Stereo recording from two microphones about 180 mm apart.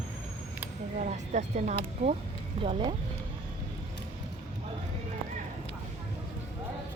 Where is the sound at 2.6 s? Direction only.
30° right (ahead or behind).